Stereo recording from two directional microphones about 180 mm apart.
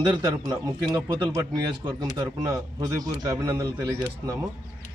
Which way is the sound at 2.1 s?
20° right (ahead or behind).